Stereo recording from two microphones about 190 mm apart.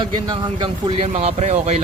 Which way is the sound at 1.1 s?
35° right (ahead or behind).